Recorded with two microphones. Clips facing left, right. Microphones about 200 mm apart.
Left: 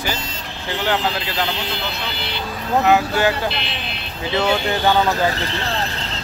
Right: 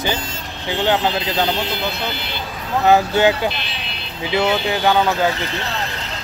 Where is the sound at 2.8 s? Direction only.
20° right (ahead or behind).